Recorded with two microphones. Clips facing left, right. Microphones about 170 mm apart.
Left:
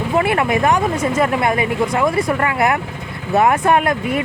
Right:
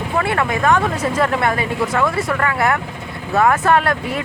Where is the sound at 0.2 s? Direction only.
20° left (ahead or behind).